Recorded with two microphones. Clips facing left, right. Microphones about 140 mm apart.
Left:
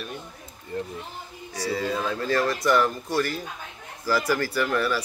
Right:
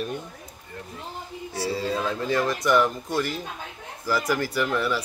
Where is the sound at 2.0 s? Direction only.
20° right (ahead or behind).